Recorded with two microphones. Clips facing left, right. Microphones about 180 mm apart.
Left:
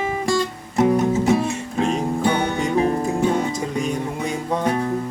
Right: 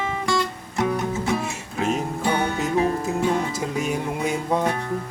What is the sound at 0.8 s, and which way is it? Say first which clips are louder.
Music: left 6 dB; 35° left (ahead or behind).